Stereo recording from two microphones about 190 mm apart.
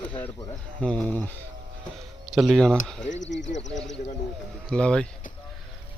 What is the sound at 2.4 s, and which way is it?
Speech, centre (ahead or behind).